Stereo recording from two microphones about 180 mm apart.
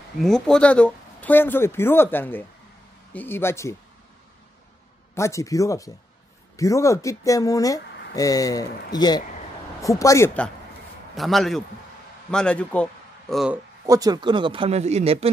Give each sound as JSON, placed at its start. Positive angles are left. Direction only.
{"t": 0.2, "sound": "speech", "side_deg": 5}
{"t": 5.1, "sound": "a man's voice", "side_deg": 15}
{"t": 13.8, "sound": "speech", "side_deg": -20}